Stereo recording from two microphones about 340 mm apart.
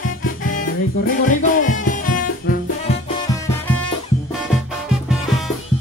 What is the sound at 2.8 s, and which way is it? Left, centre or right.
Music, centre.